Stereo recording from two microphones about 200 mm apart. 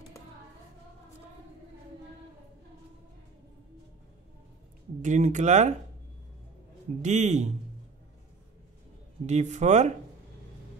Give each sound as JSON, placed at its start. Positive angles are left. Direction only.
{"t": 5.0, "sound": "speech", "side_deg": -40}
{"t": 7.0, "sound": "speech", "side_deg": -35}
{"t": 9.2, "sound": "speech", "side_deg": -35}